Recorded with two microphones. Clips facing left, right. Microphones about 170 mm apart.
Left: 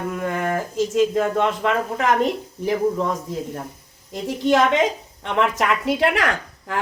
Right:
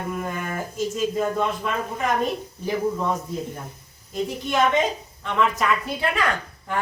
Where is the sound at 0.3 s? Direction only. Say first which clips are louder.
Left 6 dB; 90° left.